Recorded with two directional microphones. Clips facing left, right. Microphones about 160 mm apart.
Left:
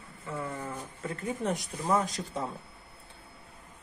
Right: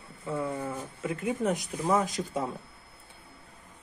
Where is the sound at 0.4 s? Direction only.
10° right (ahead or behind).